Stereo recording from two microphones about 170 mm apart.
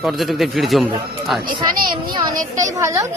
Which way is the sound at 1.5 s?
25° right (ahead or behind).